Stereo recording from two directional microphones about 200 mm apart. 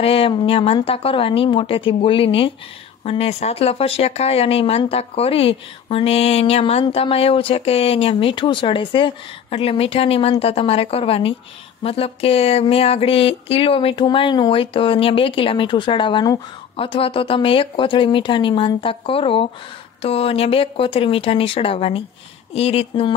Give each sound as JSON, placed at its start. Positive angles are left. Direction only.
{"t": 0.0, "sound": "speech", "side_deg": 30}